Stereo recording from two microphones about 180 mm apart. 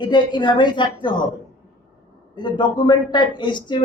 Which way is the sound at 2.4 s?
25° left (ahead or behind).